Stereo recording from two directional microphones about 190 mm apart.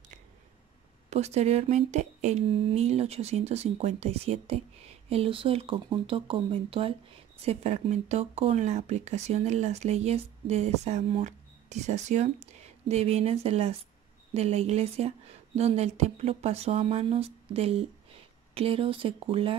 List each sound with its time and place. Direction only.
1.1 s speech: 35° right (ahead or behind)